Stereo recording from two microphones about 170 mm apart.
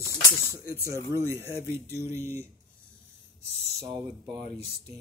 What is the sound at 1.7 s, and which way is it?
Speech, 15° right (ahead or behind).